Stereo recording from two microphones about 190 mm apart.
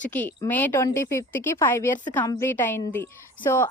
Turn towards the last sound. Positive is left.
turn(degrees=15)  # may be behind; listen again after turning